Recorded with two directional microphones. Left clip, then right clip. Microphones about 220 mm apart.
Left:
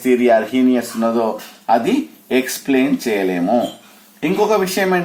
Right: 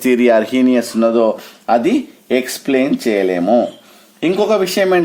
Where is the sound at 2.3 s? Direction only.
50° right (ahead or behind).